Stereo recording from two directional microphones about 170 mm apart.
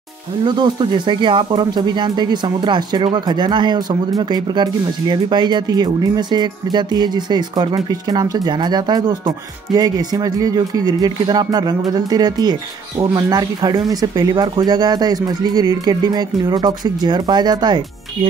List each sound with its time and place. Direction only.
0.5 s speech: 25° right (ahead or behind)